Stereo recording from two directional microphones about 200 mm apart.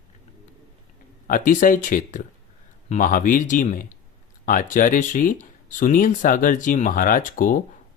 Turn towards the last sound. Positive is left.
turn(degrees=45)  # may be behind; listen again after turning